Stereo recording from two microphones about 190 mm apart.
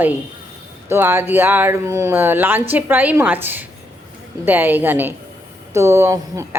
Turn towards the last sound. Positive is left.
turn(degrees=-15)  # may be behind; listen again after turning